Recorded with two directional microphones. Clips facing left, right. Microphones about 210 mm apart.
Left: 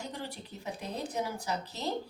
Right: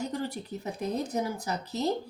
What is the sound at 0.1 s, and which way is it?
A woman's voice, 45° right (ahead or behind).